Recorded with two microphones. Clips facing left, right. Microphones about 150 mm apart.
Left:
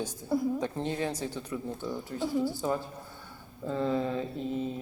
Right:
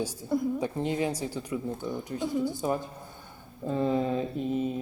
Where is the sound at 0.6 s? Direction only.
10° right (ahead or behind).